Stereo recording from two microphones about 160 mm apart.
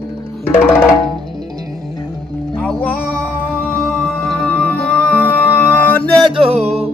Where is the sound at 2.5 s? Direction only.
5° left (ahead or behind).